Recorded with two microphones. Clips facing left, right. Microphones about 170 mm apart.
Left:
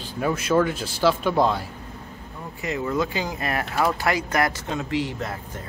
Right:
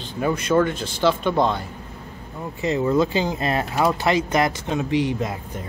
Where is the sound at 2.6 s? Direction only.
25° right (ahead or behind).